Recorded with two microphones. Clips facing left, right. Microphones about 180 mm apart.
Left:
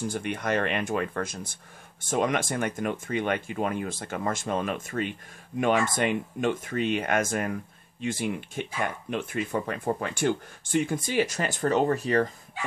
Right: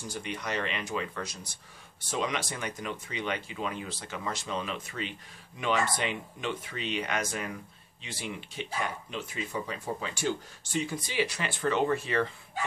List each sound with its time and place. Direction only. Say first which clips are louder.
0.1 s speech: left 2 dB; 50° left (ahead or behind)